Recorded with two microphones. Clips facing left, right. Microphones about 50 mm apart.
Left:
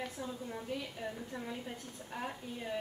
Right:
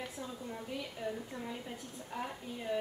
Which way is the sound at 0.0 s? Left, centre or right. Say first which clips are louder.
Left 1 dB; centre.